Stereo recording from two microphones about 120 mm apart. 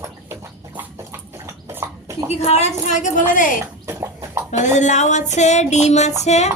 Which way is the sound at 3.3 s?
90° left.